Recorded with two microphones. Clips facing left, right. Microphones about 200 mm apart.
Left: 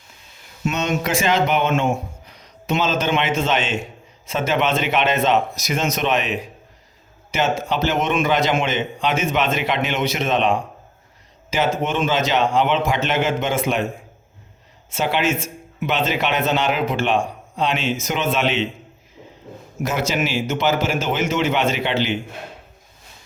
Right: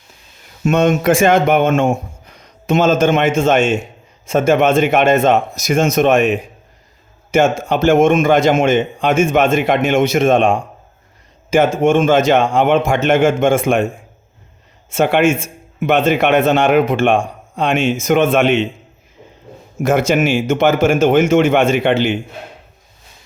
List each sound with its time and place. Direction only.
0.6 s a man's voice: 50° right (ahead or behind)
19.8 s a man's voice: 50° right (ahead or behind)